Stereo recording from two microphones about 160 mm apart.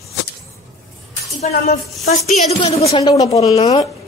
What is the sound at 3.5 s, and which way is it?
Speech, 40° left (ahead or behind).